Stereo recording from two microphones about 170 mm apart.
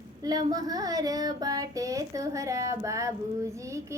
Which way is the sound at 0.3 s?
20° right (ahead or behind).